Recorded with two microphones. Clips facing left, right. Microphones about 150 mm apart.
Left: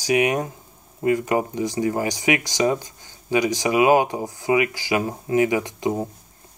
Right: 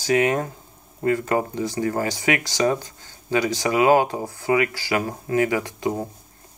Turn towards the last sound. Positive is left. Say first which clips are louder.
# left 1 dB
turn(degrees=20)  # may be behind; listen again after turning